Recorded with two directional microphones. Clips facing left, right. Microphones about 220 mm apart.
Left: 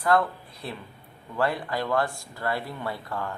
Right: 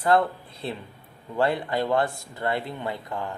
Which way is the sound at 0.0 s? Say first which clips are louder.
Right 2 dB; 25° right (ahead or behind).